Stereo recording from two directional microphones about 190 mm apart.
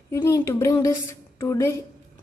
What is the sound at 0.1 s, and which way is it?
A woman's voice, 15° left (ahead or behind).